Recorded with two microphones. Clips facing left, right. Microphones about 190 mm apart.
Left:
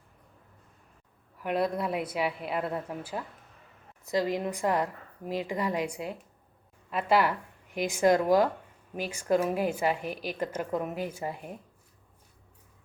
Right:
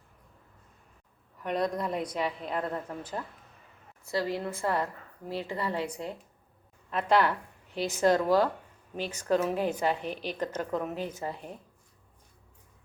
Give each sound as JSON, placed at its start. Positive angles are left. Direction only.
{"t": 1.4, "sound": "a woman's voice", "side_deg": 5}